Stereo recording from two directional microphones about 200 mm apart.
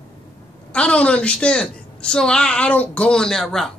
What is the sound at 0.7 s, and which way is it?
A woman's voice, 5° left (ahead or behind).